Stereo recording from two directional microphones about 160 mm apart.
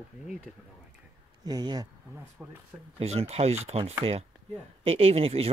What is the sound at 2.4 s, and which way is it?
Speech, 5° right (ahead or behind).